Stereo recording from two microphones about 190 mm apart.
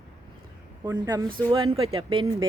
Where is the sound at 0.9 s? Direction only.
20° right (ahead or behind).